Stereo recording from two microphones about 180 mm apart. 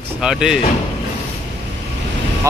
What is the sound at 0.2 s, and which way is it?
Speech, 5° right (ahead or behind).